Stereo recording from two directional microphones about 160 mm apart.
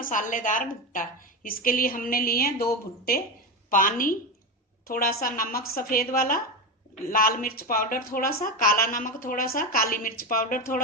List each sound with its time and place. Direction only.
0.0 s a woman's voice: 55° left (ahead or behind)
3.7 s a woman's voice: 60° left (ahead or behind)